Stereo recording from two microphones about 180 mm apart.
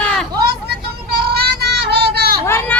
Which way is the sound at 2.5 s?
15° left (ahead or behind).